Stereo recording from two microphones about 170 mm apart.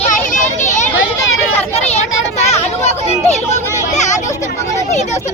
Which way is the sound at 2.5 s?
40° left (ahead or behind).